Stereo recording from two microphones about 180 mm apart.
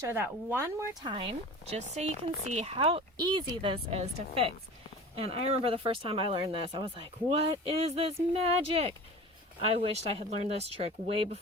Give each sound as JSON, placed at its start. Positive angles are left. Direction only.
{"t": 0.1, "sound": "speech", "side_deg": -10}
{"t": 1.0, "sound": "speech", "side_deg": -30}